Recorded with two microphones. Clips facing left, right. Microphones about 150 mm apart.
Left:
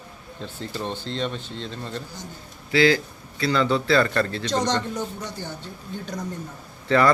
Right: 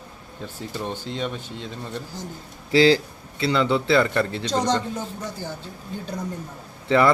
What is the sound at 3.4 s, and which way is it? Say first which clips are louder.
A man's voice: right 1 dB; 20° right (ahead or behind).